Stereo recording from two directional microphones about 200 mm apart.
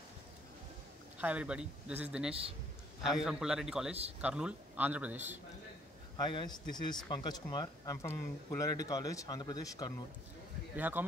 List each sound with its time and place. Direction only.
1.1 s a man's voice: 5° right (ahead or behind)
6.2 s speech: 20° left (ahead or behind)
10.8 s speech: 10° right (ahead or behind)